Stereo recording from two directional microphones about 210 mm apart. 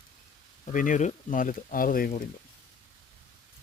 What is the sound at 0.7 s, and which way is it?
Speech, 40° left (ahead or behind).